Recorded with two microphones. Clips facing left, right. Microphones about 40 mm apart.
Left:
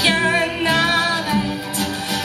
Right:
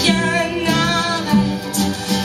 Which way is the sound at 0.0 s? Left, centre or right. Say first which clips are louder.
Even; left.